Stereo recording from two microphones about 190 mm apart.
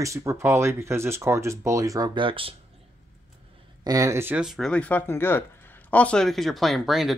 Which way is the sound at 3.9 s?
15° right (ahead or behind).